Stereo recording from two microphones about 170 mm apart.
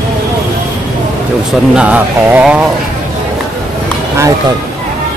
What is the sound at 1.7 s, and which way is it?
Speech, 10° right (ahead or behind).